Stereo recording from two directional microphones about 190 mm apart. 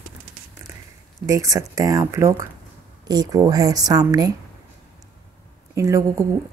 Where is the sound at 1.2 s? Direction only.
15° right (ahead or behind).